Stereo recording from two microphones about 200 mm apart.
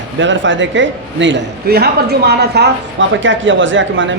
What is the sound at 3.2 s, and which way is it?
Speech, 70° right (ahead or behind).